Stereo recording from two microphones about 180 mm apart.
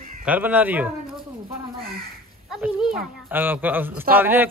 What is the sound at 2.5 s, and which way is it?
Speech, 5° right (ahead or behind).